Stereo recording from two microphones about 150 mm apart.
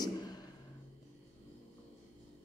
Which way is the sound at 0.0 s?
25° left (ahead or behind).